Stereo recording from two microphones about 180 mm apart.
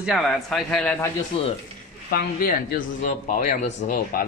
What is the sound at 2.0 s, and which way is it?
Speech, 55° left (ahead or behind).